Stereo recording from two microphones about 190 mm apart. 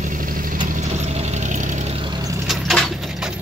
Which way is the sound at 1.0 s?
35° right (ahead or behind).